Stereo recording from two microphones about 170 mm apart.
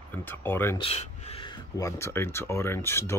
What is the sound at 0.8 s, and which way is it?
Speech, 35° left (ahead or behind).